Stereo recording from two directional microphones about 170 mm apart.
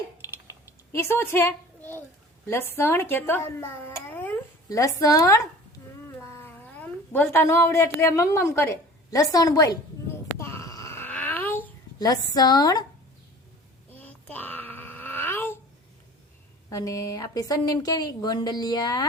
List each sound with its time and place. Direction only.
0.2 s typing: 15° right (ahead or behind)
0.9 s a woman's voice: 15° left (ahead or behind)
10.3 s a sound: 15° left (ahead or behind)
11.9 s a woman's voice: 25° left (ahead or behind)
13.9 s babbling: 10° left (ahead or behind)
16.6 s a woman's voice: 20° left (ahead or behind)